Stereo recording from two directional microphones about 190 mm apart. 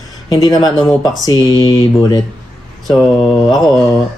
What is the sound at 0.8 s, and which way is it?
Mantra, centre (ahead or behind).